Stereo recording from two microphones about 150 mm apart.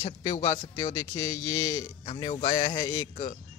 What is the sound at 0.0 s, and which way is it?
Speech, 30° left (ahead or behind).